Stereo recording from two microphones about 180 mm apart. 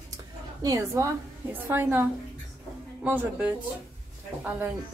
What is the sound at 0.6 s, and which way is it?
Speech, 20° right (ahead or behind).